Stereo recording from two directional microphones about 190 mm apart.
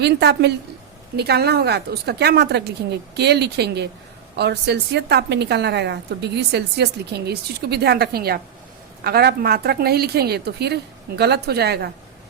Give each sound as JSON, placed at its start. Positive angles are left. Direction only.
{"t": 0.0, "sound": "a woman's voice", "side_deg": -60}